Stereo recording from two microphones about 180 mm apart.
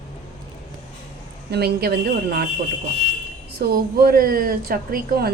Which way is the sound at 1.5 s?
60° right (ahead or behind).